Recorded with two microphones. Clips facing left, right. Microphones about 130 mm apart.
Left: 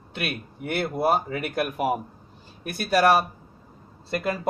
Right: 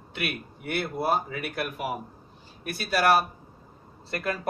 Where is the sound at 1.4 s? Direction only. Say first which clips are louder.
Left 5 dB; 45° left (ahead or behind).